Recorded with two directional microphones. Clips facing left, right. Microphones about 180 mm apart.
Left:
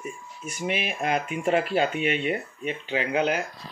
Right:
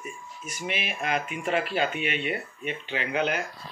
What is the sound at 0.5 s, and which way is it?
Speech, 35° left (ahead or behind).